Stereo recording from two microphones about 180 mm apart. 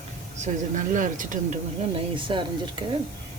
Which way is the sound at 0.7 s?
45° right (ahead or behind).